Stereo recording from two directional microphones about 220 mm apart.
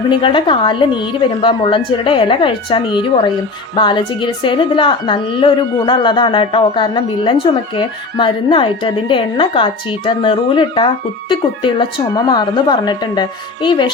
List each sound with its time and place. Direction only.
0.1 s a woman's voice: 20° left (ahead or behind)